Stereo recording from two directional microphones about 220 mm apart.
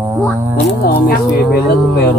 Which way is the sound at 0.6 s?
45° left (ahead or behind).